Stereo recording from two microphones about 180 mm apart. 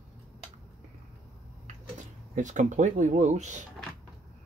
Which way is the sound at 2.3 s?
45° right (ahead or behind).